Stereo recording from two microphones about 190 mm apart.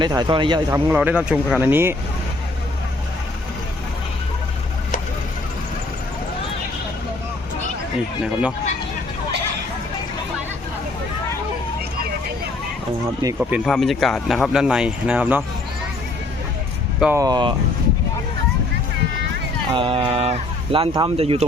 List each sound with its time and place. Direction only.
0.0 s a man's voice: 20° right (ahead or behind)
0.9 s speech: 10° right (ahead or behind)
8.2 s speech: 5° right (ahead or behind)
13.4 s speech: centre (ahead or behind)
17.2 s a man's voice: 20° right (ahead or behind)
19.7 s speech: 25° right (ahead or behind)